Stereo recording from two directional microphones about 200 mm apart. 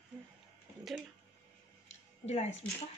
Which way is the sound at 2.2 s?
35° left (ahead or behind).